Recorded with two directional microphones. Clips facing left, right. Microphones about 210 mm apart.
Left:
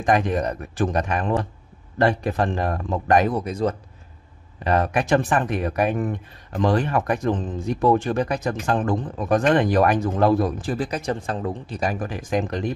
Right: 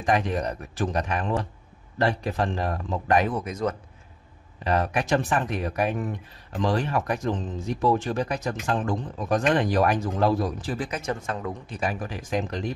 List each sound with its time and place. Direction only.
0.0 s speech: 50° left (ahead or behind); by 3.7 s 30° left (ahead or behind)
4.6 s speech: 55° left (ahead or behind)